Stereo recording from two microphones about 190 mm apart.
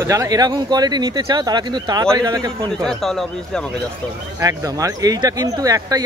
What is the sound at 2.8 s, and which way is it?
Speech, centre (ahead or behind).